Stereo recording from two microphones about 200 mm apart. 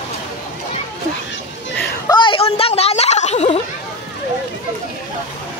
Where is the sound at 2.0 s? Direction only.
25° left (ahead or behind).